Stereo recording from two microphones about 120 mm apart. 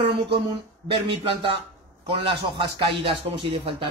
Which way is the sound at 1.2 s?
50° right (ahead or behind).